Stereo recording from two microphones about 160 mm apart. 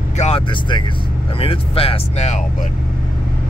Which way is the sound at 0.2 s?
35° left (ahead or behind).